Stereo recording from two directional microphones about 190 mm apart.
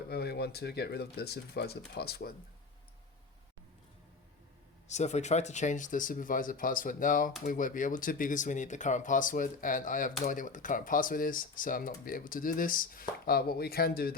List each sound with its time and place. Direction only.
0.1 s speech: 60° left (ahead or behind)
4.9 s speech: 35° left (ahead or behind); by 14.2 s 50° left (ahead or behind)